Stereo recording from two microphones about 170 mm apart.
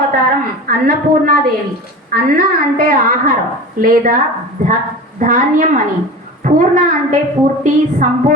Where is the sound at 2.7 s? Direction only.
60° right (ahead or behind).